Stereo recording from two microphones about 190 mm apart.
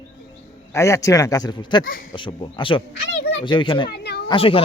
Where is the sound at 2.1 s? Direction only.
25° left (ahead or behind).